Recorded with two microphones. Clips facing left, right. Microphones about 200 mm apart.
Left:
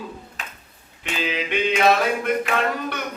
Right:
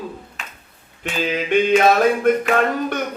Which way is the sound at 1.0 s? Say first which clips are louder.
Right 4 dB; 45° right (ahead or behind).